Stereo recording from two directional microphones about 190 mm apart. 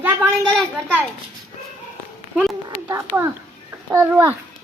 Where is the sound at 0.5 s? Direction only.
10° right (ahead or behind).